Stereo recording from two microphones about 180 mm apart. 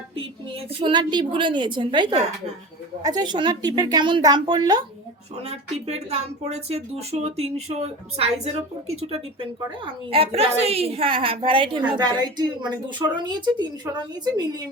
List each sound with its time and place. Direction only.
0.7 s a woman's voice: 25° right (ahead or behind)
5.4 s a woman's voice: 35° right (ahead or behind)